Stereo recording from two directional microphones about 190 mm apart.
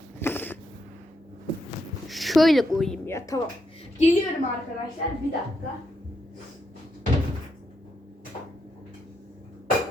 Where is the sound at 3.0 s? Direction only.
15° left (ahead or behind).